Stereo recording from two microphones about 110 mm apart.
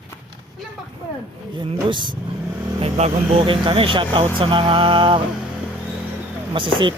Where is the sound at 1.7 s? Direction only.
50° right (ahead or behind).